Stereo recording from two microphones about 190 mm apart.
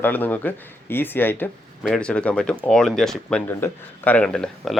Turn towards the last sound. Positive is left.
turn(degrees=5)  # may be behind; listen again after turning